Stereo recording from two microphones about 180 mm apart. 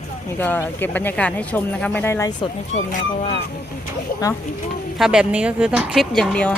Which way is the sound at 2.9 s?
45° left (ahead or behind).